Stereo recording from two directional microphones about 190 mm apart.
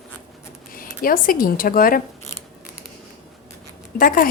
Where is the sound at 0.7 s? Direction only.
50° left (ahead or behind).